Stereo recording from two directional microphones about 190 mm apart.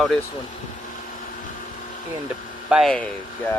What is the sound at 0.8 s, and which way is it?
Vacuum cleaner, 45° left (ahead or behind).